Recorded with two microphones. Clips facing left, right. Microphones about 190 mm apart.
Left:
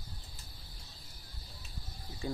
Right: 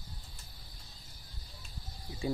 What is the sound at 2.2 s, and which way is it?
Speech, 15° right (ahead or behind).